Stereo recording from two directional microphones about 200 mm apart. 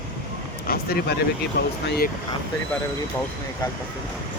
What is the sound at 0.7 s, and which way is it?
Speech, 50° left (ahead or behind).